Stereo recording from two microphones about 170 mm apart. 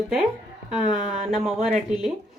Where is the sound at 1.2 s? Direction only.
Centre (ahead or behind).